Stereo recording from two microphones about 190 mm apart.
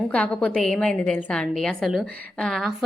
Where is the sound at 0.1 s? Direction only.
5° left (ahead or behind).